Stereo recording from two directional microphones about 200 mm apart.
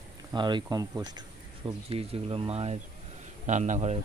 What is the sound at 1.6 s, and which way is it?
A man's voice, 30° right (ahead or behind).